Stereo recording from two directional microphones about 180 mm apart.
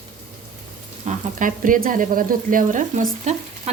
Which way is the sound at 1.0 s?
45° right (ahead or behind).